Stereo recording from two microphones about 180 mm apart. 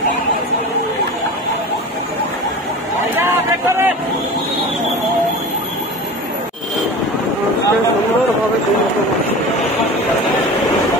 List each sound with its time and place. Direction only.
3.2 s speech: 15° right (ahead or behind)